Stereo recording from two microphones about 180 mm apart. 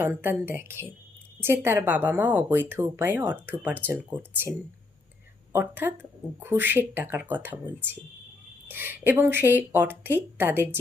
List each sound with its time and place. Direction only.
0.0 s speech: 10° right (ahead or behind)
5.5 s speech: 10° right (ahead or behind)